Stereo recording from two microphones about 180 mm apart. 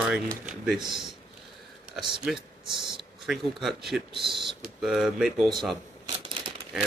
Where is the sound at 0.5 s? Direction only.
Centre (ahead or behind).